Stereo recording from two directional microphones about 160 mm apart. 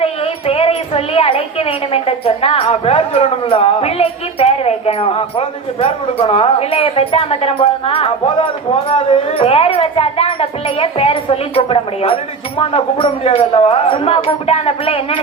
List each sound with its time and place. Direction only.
0.0 s a woman's voice: 40° left (ahead or behind)